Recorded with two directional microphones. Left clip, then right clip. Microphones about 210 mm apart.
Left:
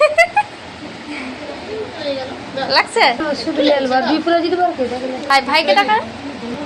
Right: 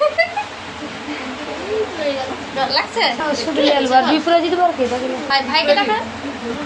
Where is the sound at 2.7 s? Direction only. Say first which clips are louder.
Left 7 dB; 30° left (ahead or behind).